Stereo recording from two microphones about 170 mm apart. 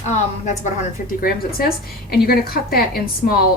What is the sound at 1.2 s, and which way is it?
A woman's voice, 60° left (ahead or behind).